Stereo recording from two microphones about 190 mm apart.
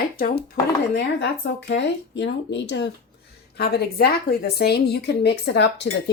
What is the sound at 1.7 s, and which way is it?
Speech, 70° left (ahead or behind).